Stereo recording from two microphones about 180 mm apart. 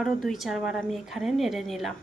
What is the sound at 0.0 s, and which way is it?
Speech, centre (ahead or behind).